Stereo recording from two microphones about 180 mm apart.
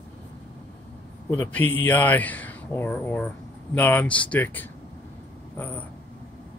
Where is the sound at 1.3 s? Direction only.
10° left (ahead or behind).